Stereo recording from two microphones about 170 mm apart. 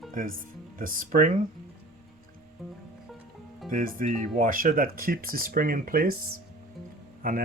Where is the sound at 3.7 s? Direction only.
55° right (ahead or behind).